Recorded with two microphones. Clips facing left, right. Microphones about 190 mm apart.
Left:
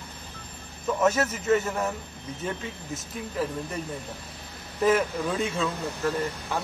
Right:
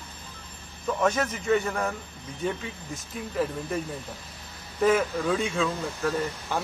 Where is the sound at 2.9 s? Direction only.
Centre (ahead or behind).